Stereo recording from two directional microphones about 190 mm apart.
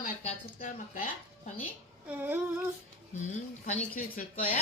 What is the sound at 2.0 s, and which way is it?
Female singing, 10° right (ahead or behind).